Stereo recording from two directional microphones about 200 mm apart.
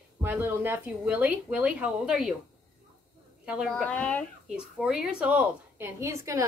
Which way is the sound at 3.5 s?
Centre (ahead or behind).